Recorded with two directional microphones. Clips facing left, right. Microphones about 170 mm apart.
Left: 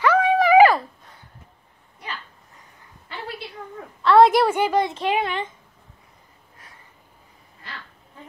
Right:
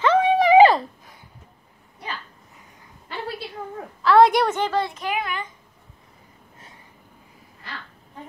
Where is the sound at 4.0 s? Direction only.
Centre (ahead or behind).